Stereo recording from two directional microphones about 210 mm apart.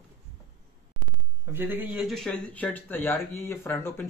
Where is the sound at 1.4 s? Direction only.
10° right (ahead or behind).